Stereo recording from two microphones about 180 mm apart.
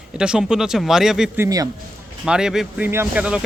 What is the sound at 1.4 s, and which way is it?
Speech, 20° right (ahead or behind).